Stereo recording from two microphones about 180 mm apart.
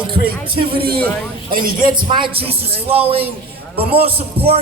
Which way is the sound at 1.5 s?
50° right (ahead or behind).